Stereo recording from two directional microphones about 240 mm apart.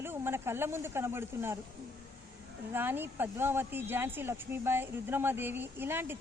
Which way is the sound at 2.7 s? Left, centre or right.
Centre.